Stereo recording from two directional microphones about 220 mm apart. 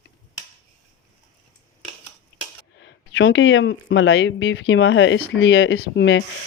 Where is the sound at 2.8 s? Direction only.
55° left (ahead or behind).